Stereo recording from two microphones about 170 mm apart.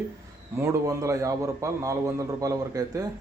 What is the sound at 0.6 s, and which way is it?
A man's voice, 15° right (ahead or behind).